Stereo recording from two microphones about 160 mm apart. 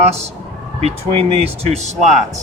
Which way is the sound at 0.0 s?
40° right (ahead or behind).